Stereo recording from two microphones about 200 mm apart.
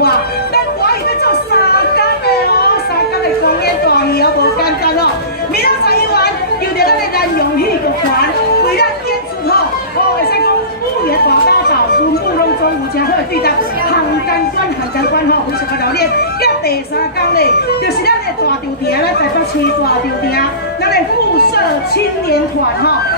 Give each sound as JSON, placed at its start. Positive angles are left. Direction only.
{"t": 0.8, "sound": "chatter", "side_deg": 50}
{"t": 5.6, "sound": "a sound", "side_deg": 50}
{"t": 6.8, "sound": "chatter", "side_deg": 50}
{"t": 11.1, "sound": "chatter", "side_deg": 50}
{"t": 16.0, "sound": "speech", "side_deg": 50}
{"t": 20.3, "sound": "a woman's voice", "side_deg": 50}